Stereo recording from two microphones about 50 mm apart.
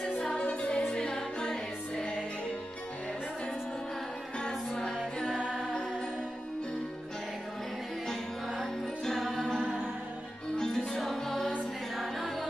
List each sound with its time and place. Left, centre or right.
0.4 s music: left
4.4 s music: centre
8.1 s music: centre
10.9 s music: centre